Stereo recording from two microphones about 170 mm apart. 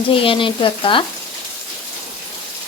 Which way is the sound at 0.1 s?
30° left (ahead or behind).